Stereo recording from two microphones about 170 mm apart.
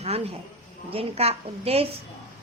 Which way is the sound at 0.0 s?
35° right (ahead or behind).